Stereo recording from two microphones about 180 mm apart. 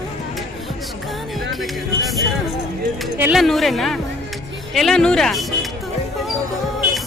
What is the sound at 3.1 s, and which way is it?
Speech, 10° right (ahead or behind).